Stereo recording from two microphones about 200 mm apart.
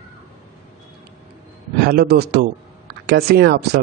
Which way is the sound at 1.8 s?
50° right (ahead or behind).